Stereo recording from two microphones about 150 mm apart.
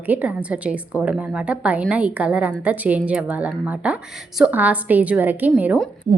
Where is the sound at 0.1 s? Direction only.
10° right (ahead or behind).